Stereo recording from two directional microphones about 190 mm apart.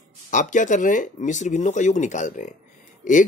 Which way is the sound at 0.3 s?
40° left (ahead or behind).